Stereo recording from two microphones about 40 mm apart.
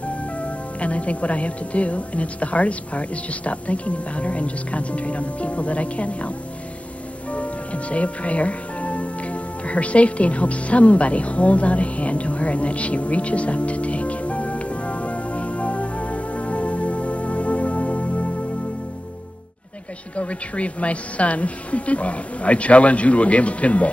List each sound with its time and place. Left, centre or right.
0.4 s speech: left
7.2 s music: left
20.2 s speech: left